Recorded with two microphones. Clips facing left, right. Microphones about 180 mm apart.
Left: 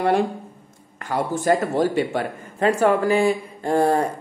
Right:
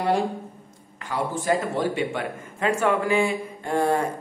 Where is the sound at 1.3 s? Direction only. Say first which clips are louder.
Left 5 dB; 40° left (ahead or behind).